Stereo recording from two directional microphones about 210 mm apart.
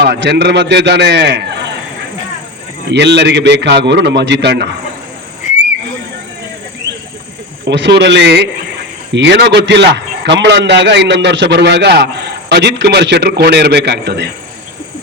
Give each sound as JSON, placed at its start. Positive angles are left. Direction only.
{"t": 0.0, "sound": "a man's voice", "side_deg": -50}
{"t": 2.9, "sound": "a man's voice", "side_deg": -55}
{"t": 7.7, "sound": "a man's voice", "side_deg": -55}